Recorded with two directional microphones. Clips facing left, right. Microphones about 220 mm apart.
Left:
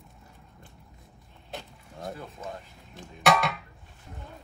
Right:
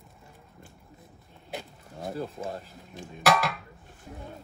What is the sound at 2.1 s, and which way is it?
Speech, 30° right (ahead or behind).